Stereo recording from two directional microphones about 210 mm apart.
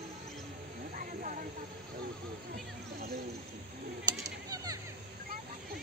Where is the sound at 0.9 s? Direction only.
40° right (ahead or behind).